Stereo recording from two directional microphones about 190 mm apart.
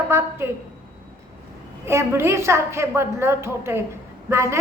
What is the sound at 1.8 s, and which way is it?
A woman's voice, 15° right (ahead or behind).